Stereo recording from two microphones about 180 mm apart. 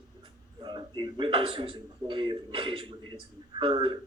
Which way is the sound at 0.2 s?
25° right (ahead or behind).